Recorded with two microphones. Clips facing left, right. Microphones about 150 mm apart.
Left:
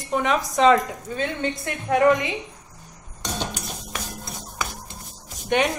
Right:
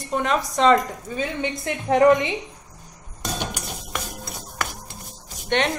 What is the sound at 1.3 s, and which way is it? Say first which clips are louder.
Speech: right 1 dB; 20° right (ahead or behind).